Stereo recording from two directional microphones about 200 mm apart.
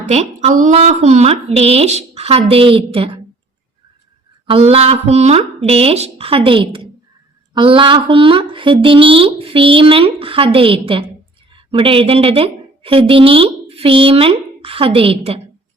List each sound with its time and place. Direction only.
0.0 s a woman's voice: 35° right (ahead or behind)
4.4 s a woman's voice: 30° right (ahead or behind)